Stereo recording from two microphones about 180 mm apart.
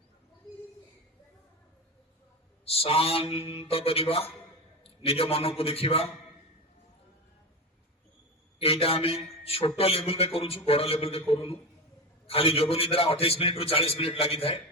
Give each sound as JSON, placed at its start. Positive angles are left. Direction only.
{"t": 2.6, "sound": "a man's voice", "side_deg": 30}
{"t": 8.5, "sound": "a man's voice", "side_deg": 35}